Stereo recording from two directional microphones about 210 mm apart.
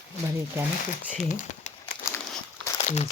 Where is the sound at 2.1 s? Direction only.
10° left (ahead or behind).